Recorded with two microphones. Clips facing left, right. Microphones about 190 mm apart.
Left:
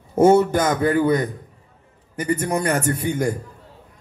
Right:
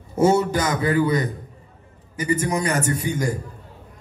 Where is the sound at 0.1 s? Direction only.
55° left (ahead or behind).